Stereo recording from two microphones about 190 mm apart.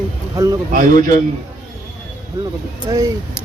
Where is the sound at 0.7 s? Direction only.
45° right (ahead or behind).